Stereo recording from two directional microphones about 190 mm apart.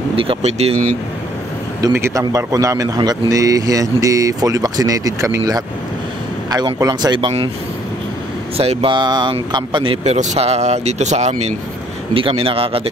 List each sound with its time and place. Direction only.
0.1 s speech: 30° right (ahead or behind)
1.8 s speech: 15° right (ahead or behind)
8.5 s speech: 30° right (ahead or behind)